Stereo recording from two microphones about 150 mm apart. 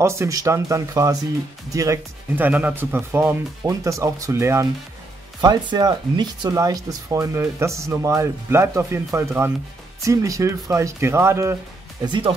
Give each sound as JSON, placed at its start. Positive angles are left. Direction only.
{"t": 0.0, "sound": "speech", "side_deg": -20}
{"t": 5.7, "sound": "speech", "side_deg": -30}
{"t": 12.0, "sound": "speech", "side_deg": -35}